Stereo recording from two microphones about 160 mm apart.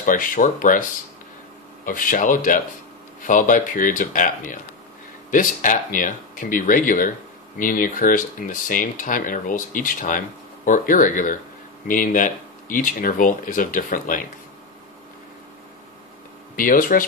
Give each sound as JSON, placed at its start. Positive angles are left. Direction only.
{"t": 0.0, "sound": "speech", "side_deg": 55}
{"t": 1.9, "sound": "speech", "side_deg": 60}
{"t": 16.5, "sound": "speech", "side_deg": 60}